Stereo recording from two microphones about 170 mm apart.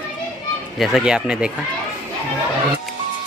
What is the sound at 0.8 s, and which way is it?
Speech, centre (ahead or behind).